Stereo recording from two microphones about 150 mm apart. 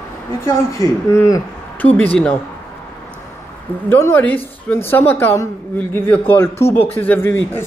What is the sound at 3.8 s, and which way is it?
A man's voice, 15° left (ahead or behind).